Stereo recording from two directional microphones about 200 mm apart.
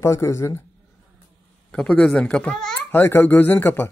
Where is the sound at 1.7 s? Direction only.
5° left (ahead or behind).